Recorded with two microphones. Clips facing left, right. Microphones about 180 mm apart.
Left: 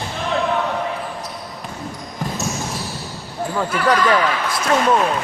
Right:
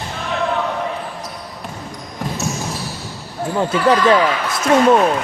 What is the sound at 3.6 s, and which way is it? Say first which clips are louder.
Speech: right 3 dB; 25° right (ahead or behind).